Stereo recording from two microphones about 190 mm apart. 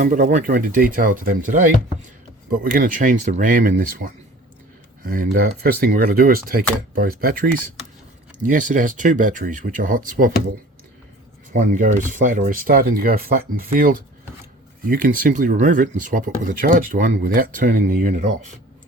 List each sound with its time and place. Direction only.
0.0 s speech: 45° right (ahead or behind)
11.5 s speech: 45° right (ahead or behind)